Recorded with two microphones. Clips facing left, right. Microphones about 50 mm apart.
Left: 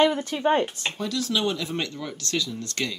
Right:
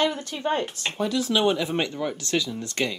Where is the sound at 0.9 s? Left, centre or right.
Centre.